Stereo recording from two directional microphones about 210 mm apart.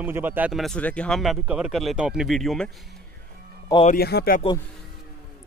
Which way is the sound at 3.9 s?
50° left (ahead or behind).